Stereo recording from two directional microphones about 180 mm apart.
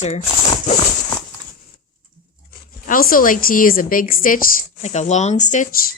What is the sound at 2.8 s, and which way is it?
A woman's voice, 50° left (ahead or behind).